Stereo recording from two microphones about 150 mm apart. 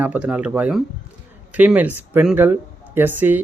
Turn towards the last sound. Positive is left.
turn(degrees=-15)  # may be behind; listen again after turning